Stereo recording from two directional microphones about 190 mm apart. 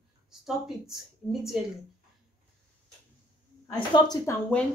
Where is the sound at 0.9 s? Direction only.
Centre (ahead or behind).